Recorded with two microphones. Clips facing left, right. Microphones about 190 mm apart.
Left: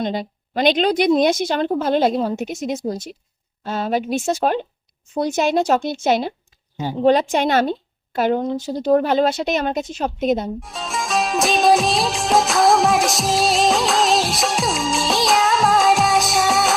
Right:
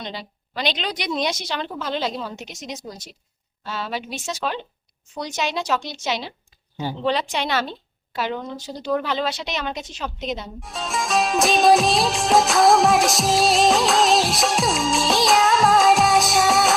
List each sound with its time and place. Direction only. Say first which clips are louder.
0.0 s a woman's voice: left 10 dB; 50° left (ahead or behind)
10.6 s music: even; centre (ahead or behind)